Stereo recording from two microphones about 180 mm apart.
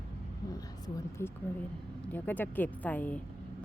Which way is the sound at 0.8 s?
20° left (ahead or behind).